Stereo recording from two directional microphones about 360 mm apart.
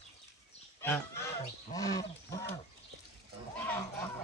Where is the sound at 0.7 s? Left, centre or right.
Centre.